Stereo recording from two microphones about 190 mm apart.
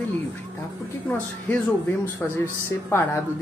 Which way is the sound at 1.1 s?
10° left (ahead or behind).